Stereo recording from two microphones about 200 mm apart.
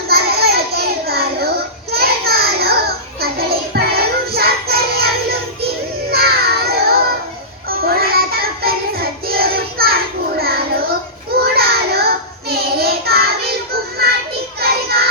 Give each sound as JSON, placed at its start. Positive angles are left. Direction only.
{"t": 0.1, "sound": "a sound", "side_deg": -50}
{"t": 1.9, "sound": "child singing", "side_deg": -50}
{"t": 3.2, "sound": "music", "side_deg": -50}
{"t": 7.7, "sound": "child singing", "side_deg": -50}
{"t": 14.6, "sound": "child singing", "side_deg": -50}